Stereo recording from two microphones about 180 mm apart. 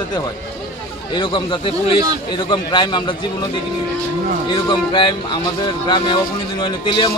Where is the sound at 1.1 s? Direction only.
25° left (ahead or behind).